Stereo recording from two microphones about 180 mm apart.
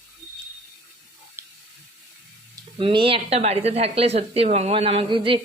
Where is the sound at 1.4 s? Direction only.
15° right (ahead or behind).